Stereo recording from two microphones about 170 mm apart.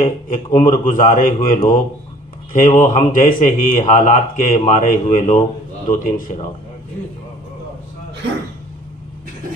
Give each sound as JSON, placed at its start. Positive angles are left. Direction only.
{"t": 0.0, "sound": "a man's voice", "side_deg": 50}